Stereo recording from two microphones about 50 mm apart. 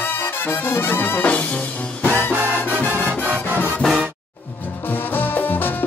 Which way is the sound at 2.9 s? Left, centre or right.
Right.